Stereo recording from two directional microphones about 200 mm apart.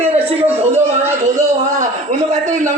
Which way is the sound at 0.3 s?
10° right (ahead or behind).